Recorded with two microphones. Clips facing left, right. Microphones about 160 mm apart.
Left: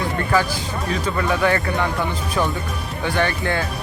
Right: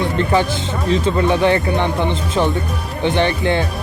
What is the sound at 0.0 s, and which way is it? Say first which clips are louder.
Speech: right 4 dB; 25° right (ahead or behind).